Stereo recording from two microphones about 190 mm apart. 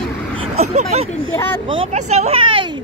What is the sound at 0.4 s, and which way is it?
Speech, 35° right (ahead or behind).